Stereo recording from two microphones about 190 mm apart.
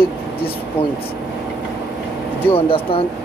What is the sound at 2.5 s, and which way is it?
Speech, 30° left (ahead or behind).